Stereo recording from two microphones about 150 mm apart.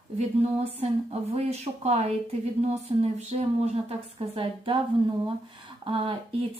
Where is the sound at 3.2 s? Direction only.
45° right (ahead or behind).